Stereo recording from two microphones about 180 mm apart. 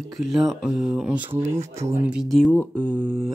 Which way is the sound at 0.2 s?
Centre (ahead or behind).